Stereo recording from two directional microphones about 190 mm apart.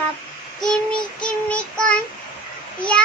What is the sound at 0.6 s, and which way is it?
Child singing, 5° left (ahead or behind).